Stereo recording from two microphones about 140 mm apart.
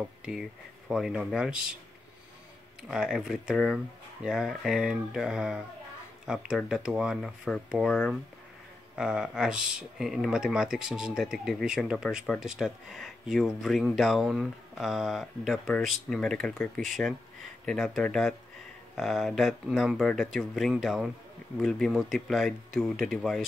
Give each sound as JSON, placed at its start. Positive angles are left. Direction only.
{"t": 0.2, "sound": "speech", "side_deg": -5}
{"t": 2.9, "sound": "speech", "side_deg": -5}